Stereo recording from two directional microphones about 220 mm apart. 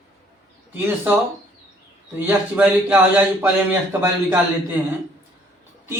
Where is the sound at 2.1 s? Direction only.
10° right (ahead or behind).